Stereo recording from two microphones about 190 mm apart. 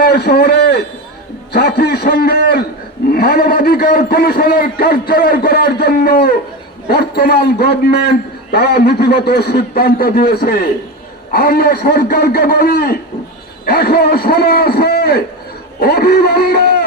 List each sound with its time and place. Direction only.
0.0 s a man's voice: 55° left (ahead or behind)
3.1 s a sound: 55° left (ahead or behind)
6.8 s a man's voice: 55° left (ahead or behind)